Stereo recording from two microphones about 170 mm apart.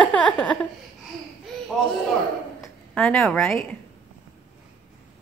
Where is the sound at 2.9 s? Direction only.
5° left (ahead or behind).